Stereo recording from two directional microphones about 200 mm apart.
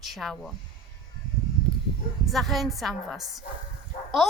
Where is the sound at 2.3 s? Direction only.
Centre (ahead or behind).